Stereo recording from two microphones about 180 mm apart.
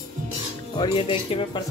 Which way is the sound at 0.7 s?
30° left (ahead or behind).